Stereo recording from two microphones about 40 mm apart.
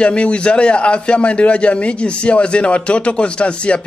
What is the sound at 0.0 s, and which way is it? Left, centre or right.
A man's voice, left.